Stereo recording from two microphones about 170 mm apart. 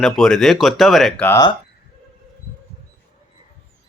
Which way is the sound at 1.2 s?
20° left (ahead or behind).